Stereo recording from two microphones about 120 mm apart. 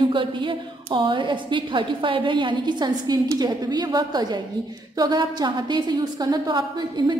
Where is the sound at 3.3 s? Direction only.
35° right (ahead or behind).